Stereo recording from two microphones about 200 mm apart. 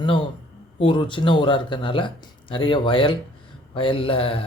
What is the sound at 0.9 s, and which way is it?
Speech, 25° left (ahead or behind).